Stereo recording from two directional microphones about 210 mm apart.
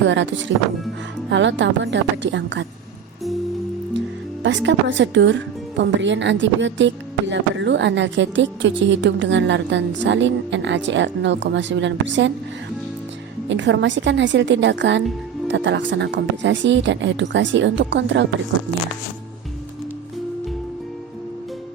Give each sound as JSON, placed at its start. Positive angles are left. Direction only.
{"t": 0.0, "sound": "speech", "side_deg": -60}
{"t": 4.4, "sound": "speech", "side_deg": -60}
{"t": 13.5, "sound": "speech", "side_deg": -60}